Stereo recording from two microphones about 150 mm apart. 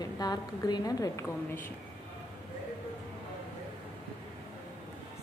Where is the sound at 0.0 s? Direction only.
25° left (ahead or behind).